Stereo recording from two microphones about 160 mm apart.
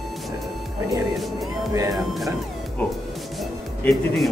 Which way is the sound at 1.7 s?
20° right (ahead or behind).